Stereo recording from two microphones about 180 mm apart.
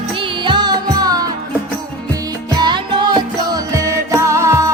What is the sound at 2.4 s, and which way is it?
Music, 25° right (ahead or behind).